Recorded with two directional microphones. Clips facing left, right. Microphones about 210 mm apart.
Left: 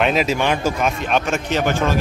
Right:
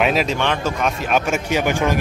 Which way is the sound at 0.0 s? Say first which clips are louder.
Left 1 dB; centre (ahead or behind).